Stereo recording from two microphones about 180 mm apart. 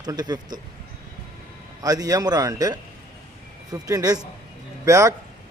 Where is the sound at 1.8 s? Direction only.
20° right (ahead or behind).